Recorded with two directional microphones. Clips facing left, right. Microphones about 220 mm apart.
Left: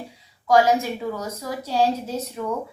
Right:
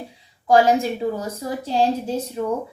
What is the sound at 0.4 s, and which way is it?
A woman's voice, 30° right (ahead or behind).